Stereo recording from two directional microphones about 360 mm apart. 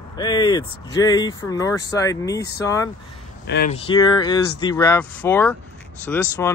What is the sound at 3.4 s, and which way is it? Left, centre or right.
Speech, left.